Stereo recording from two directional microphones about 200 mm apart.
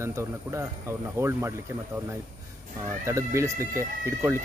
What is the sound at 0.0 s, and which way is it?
Speech, 15° right (ahead or behind).